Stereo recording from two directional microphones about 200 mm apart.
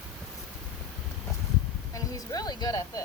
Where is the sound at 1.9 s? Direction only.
15° left (ahead or behind).